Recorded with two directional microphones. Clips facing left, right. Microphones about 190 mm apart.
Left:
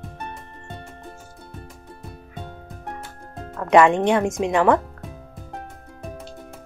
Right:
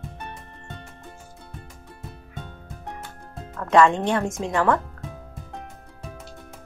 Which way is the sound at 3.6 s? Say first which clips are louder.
Left 3 dB; 20° left (ahead or behind).